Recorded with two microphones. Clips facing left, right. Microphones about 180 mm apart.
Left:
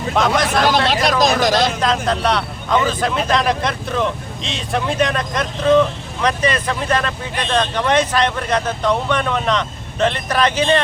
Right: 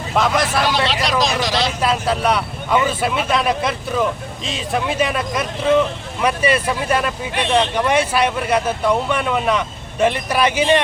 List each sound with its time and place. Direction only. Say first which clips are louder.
0.2 s speech: left 1 dB; 5° right (ahead or behind)
0.7 s speech: left 3 dB; 50° left (ahead or behind)
1.8 s speech: even; 5° right (ahead or behind)